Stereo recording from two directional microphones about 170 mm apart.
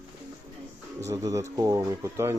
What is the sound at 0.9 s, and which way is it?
Speech, 20° right (ahead or behind).